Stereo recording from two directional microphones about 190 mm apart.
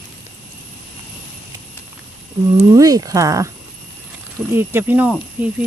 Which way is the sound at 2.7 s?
20° right (ahead or behind).